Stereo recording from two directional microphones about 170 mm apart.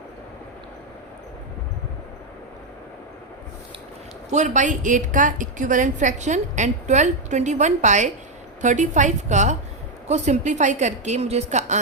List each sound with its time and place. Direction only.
4.3 s a woman's voice: 45° right (ahead or behind)